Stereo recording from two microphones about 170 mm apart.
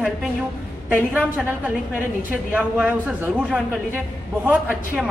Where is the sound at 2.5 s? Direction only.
5° right (ahead or behind).